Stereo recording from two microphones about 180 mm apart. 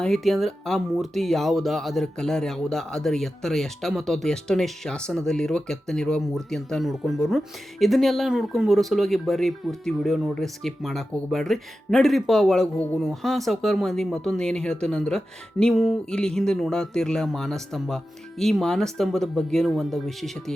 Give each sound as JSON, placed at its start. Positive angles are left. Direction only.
{"t": 0.0, "sound": "speech", "side_deg": 0}